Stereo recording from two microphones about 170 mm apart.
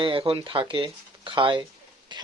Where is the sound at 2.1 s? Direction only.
25° right (ahead or behind).